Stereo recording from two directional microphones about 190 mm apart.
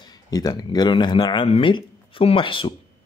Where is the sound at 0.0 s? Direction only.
20° left (ahead or behind).